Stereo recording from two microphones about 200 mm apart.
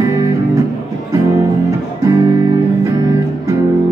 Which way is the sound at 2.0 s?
20° right (ahead or behind).